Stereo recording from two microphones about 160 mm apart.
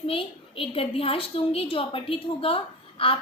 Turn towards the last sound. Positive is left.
turn(degrees=35)  # may be behind; listen again after turning